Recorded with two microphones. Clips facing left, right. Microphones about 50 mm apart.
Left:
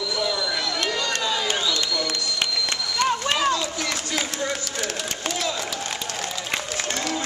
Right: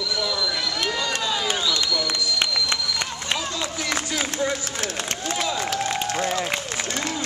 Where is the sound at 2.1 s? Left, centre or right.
Centre.